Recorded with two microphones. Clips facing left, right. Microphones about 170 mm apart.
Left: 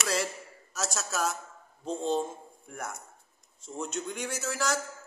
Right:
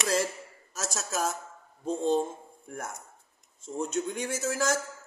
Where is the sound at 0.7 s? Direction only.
50° right (ahead or behind).